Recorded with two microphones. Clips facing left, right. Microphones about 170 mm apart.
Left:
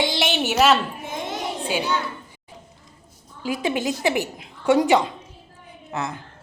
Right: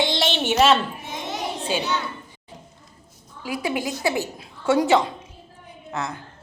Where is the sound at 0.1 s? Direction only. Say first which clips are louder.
Even; 5° left (ahead or behind).